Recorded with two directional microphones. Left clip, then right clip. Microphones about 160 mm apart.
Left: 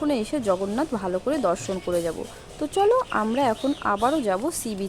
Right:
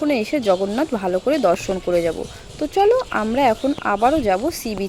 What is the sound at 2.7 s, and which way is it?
Speech, 5° right (ahead or behind).